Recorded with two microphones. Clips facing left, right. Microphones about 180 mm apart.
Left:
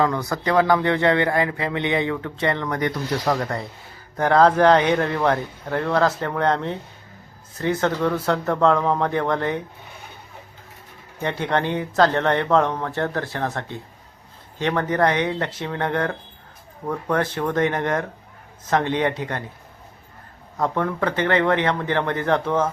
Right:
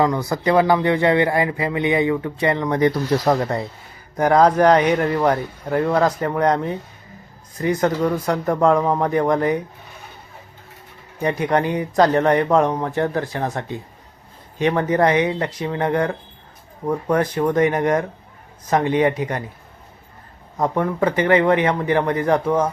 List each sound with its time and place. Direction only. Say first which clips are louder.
0.0 s a man's voice: right 3 dB; 20° right (ahead or behind); by 2.1 s centre (ahead or behind)
2.1 s speech: right 3 dB; 20° right (ahead or behind)
4.2 s a man's voice: right 1 dB; 10° right (ahead or behind)
11.2 s a man's voice: right 4 dB; 10° right (ahead or behind)
15.4 s speech: right 2 dB; 5° left (ahead or behind)
15.6 s a man's voice: right 4 dB; 10° right (ahead or behind)
20.6 s a man's voice: right 3 dB; 10° right (ahead or behind)